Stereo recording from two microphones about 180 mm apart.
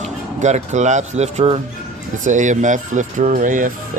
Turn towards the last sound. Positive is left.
turn(degrees=-45)  # may be behind; listen again after turning